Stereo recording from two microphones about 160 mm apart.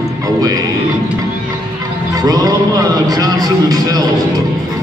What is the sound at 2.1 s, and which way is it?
A man's voice, 25° right (ahead or behind).